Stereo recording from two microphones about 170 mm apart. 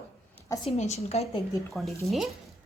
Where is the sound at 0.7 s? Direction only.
40° left (ahead or behind).